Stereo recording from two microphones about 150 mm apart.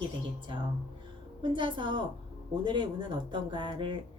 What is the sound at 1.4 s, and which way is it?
A woman's voice, 35° right (ahead or behind).